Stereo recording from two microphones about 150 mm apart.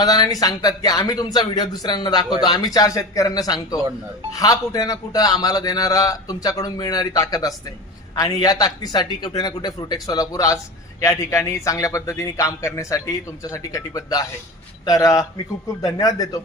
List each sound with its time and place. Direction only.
0.0 s a man's voice: 25° left (ahead or behind)